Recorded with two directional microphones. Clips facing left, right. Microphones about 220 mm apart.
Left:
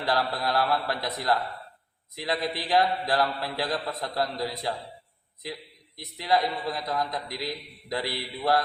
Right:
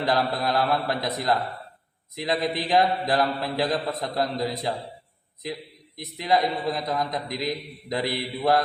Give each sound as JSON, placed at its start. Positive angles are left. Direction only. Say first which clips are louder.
{"t": 0.0, "sound": "a man's voice", "louder": "right 3 dB", "side_deg": -20}
{"t": 6.0, "sound": "a man's voice", "louder": "right 2 dB", "side_deg": -20}